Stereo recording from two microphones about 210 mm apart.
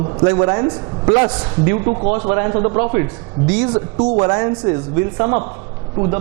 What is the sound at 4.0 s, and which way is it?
Speech, 25° right (ahead or behind).